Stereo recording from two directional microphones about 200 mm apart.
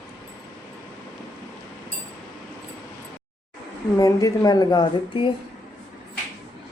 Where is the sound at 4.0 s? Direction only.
15° left (ahead or behind).